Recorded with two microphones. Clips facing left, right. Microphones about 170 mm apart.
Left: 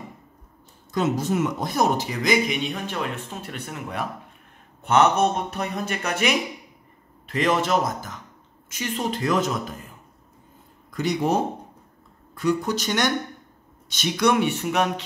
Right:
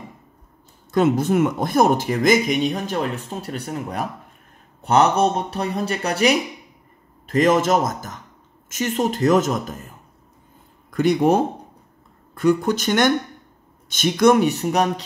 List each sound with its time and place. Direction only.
0.9 s speech: 55° right (ahead or behind)
10.9 s speech: 55° right (ahead or behind)
12.4 s speech: 55° right (ahead or behind); by 14.9 s 40° right (ahead or behind)